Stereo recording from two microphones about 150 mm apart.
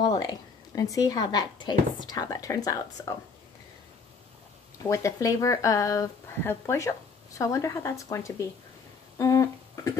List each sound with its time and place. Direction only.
0.0 s speech: 25° left (ahead or behind)
4.8 s speech: 20° left (ahead or behind)
9.2 s a sound: 20° left (ahead or behind)